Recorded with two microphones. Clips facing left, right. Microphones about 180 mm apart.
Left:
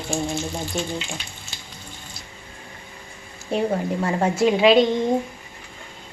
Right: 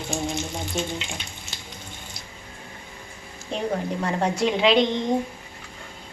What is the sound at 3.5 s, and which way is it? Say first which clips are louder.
A woman's voice: left 4 dB; 5° left (ahead or behind).